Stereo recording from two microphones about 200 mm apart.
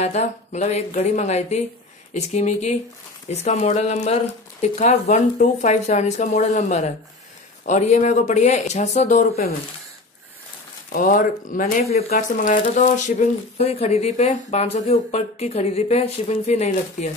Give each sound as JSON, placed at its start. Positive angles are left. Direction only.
{"t": 0.0, "sound": "speech", "side_deg": 35}
{"t": 10.9, "sound": "speech", "side_deg": 45}